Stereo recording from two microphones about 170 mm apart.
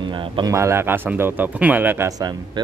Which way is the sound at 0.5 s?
15° right (ahead or behind).